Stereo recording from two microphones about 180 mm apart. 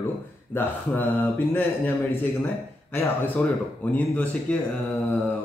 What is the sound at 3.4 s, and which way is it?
Speech, 10° left (ahead or behind).